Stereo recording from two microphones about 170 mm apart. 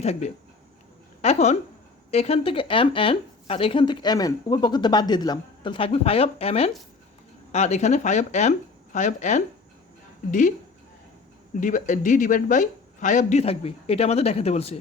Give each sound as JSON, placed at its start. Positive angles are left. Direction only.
{"t": 0.0, "sound": "speech", "side_deg": 40}
{"t": 11.6, "sound": "speech", "side_deg": 50}